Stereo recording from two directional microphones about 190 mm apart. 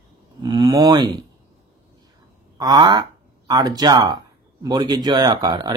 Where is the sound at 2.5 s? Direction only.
20° right (ahead or behind).